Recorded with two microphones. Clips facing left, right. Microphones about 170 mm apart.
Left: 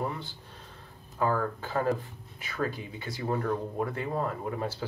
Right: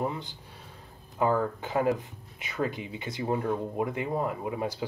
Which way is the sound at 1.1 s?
20° right (ahead or behind).